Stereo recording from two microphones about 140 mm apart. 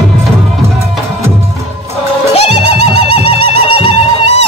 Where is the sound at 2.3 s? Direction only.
45° left (ahead or behind).